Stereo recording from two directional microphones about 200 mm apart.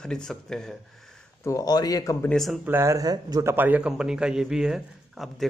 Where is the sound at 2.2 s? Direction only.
Centre (ahead or behind).